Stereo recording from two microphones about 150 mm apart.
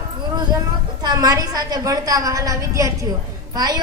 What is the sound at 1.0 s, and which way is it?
A woman's voice, 25° right (ahead or behind).